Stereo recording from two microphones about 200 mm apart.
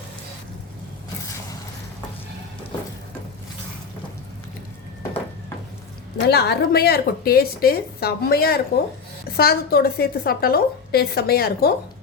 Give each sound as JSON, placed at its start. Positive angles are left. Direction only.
{"t": 6.2, "sound": "a woman's voice", "side_deg": 55}